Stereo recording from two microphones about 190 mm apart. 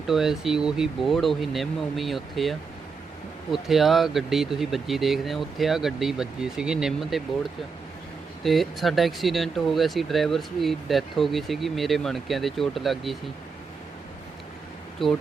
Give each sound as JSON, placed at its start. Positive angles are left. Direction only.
{"t": 0.1, "sound": "speech", "side_deg": 0}
{"t": 8.4, "sound": "speech", "side_deg": 0}
{"t": 14.9, "sound": "speech", "side_deg": 0}